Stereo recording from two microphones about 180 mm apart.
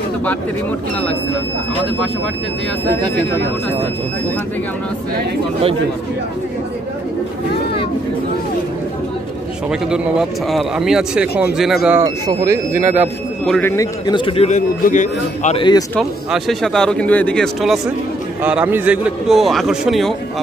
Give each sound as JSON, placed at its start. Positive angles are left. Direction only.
{"t": 9.7, "sound": "a man's voice", "side_deg": -5}
{"t": 12.0, "sound": "speech", "side_deg": -15}
{"t": 13.5, "sound": "a man's voice", "side_deg": 10}
{"t": 15.5, "sound": "a man's voice", "side_deg": 25}
{"t": 16.0, "sound": "a man's voice", "side_deg": 0}